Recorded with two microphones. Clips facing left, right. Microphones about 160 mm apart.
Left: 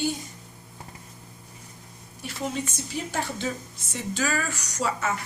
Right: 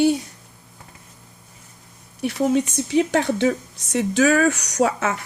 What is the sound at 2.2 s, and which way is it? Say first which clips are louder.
Speech: right 11 dB; 65° right (ahead or behind).